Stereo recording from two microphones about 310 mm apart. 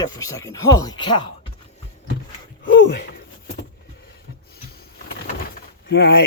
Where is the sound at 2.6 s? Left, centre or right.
Left.